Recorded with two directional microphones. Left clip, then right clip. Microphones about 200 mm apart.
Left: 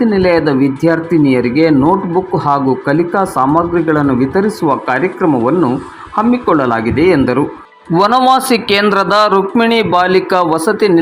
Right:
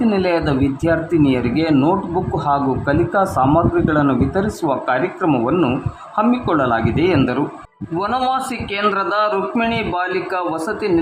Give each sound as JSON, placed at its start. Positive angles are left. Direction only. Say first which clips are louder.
{"t": 0.1, "sound": "speech", "louder": "left 6 dB", "side_deg": 20}
{"t": 7.9, "sound": "a man's voice", "louder": "left 9 dB", "side_deg": 35}